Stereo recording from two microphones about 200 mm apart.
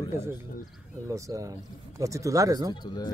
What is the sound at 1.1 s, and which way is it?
Speech, 15° right (ahead or behind).